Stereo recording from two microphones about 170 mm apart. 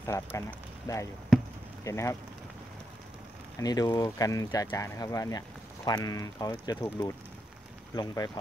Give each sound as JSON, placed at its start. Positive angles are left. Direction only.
{"t": 0.0, "sound": "speech", "side_deg": 15}
{"t": 3.5, "sound": "speech", "side_deg": 20}